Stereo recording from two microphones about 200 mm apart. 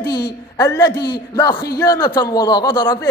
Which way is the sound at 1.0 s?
55° left (ahead or behind).